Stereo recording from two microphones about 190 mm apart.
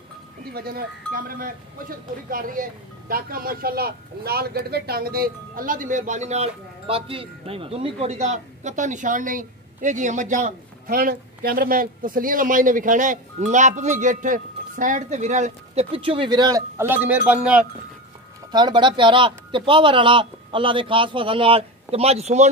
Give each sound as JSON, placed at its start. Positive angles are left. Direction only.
{"t": 0.5, "sound": "speech", "side_deg": -55}
{"t": 18.5, "sound": "a man's voice", "side_deg": -25}